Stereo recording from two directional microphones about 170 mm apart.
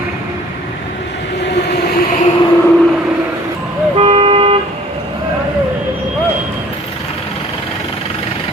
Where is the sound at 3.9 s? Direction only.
35° right (ahead or behind).